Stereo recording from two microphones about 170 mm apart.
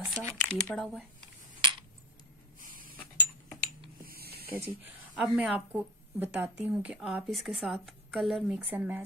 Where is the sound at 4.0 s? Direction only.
60° right (ahead or behind).